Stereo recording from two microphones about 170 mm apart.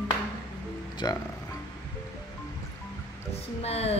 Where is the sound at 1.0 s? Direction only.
25° left (ahead or behind).